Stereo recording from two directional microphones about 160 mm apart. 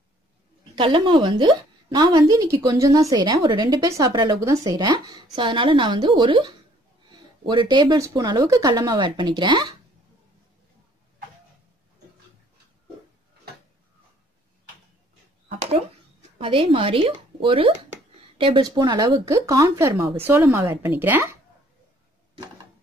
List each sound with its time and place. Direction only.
0.7 s a woman's voice: 30° right (ahead or behind)
15.4 s a woman's voice: 45° right (ahead or behind); by 21.4 s 15° right (ahead or behind)